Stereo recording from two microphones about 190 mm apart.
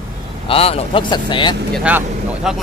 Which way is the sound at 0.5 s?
30° left (ahead or behind).